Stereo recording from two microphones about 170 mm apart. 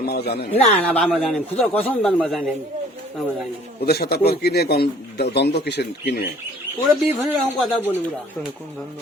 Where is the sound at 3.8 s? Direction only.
65° left (ahead or behind).